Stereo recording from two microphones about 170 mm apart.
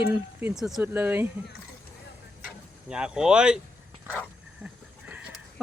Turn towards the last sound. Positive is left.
turn(degrees=-5)  # may be behind; listen again after turning